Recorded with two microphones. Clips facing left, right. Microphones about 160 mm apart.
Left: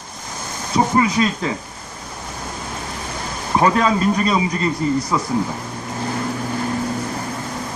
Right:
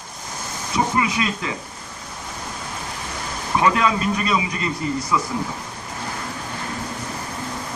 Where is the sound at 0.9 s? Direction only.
35° left (ahead or behind).